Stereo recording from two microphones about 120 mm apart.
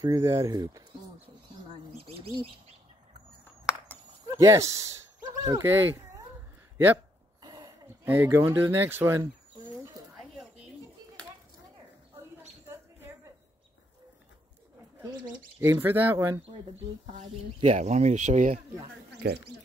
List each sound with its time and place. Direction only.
0.0 s speech: 25° right (ahead or behind)
4.4 s speech: 25° right (ahead or behind)
7.4 s speech: 30° right (ahead or behind)
12.6 s mouse: 20° right (ahead or behind)
15.6 s speech: 15° right (ahead or behind)
17.6 s speech: 70° right (ahead or behind); by 18.5 s 85° right